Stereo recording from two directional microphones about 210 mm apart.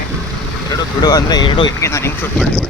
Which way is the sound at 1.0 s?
20° left (ahead or behind).